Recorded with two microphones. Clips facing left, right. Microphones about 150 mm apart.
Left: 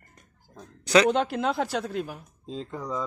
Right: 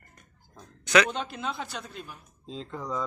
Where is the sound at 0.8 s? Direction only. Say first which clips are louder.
Left 3 dB; 35° left (ahead or behind).